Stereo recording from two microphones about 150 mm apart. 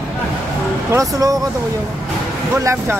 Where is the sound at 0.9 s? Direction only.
20° right (ahead or behind).